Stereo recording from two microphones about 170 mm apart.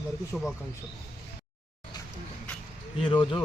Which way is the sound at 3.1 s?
30° left (ahead or behind).